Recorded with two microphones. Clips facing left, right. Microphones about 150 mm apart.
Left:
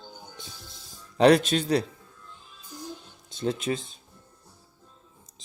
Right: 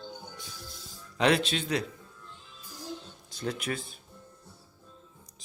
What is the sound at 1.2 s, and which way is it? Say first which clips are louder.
Speech: left 7 dB; 40° left (ahead or behind).